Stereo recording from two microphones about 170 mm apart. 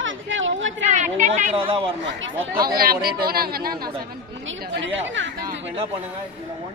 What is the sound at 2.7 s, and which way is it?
Speech, 60° right (ahead or behind).